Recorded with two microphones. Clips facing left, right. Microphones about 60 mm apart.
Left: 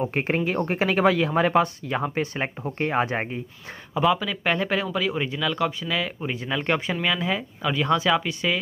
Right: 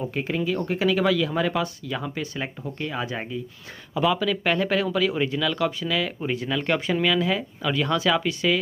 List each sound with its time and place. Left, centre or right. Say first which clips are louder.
0.0 s speech: left 2 dB; left
3.9 s speech: even; centre